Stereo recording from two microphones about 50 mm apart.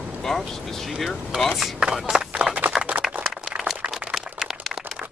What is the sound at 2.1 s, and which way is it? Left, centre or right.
Run, right.